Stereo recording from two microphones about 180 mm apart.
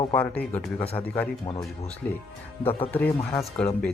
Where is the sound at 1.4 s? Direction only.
25° left (ahead or behind).